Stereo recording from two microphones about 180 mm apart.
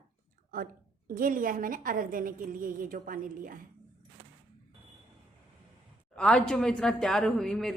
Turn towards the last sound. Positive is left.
turn(degrees=5)  # may be behind; listen again after turning